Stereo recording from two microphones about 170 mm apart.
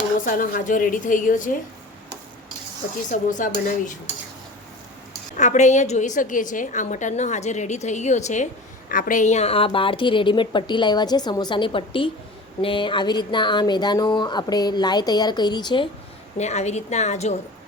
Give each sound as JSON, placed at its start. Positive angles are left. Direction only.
{"t": 0.3, "sound": "a woman's voice", "side_deg": 55}
{"t": 3.1, "sound": "a woman's voice", "side_deg": 50}
{"t": 5.4, "sound": "a woman's voice", "side_deg": 45}
{"t": 16.4, "sound": "a woman's voice", "side_deg": 40}